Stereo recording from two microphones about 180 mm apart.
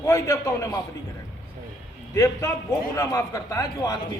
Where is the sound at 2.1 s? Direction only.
15° left (ahead or behind).